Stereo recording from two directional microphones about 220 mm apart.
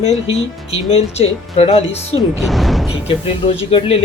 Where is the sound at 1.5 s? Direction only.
25° left (ahead or behind).